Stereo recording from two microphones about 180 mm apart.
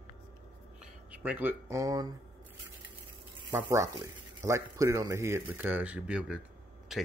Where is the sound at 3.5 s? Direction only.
15° right (ahead or behind).